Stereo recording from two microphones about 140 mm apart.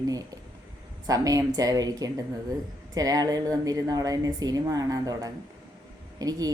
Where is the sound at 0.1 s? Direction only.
25° right (ahead or behind).